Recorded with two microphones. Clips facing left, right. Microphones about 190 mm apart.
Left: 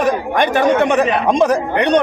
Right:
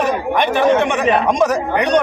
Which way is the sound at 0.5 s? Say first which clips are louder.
Left 2 dB; 35° left (ahead or behind).